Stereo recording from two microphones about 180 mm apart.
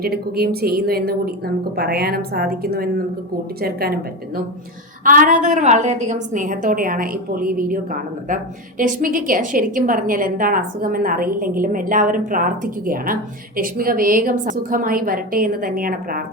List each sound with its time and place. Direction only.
0.0 s a woman's voice: 60° right (ahead or behind)
5.0 s a woman's voice: 45° right (ahead or behind)